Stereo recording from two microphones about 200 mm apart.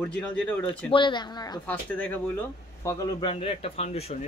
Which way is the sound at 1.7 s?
10° left (ahead or behind).